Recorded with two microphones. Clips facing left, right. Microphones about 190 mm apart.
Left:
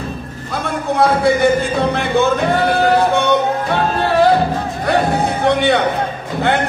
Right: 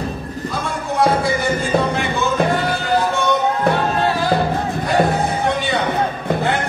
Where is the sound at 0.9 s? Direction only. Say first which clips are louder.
Left 3 dB; 60° left (ahead or behind).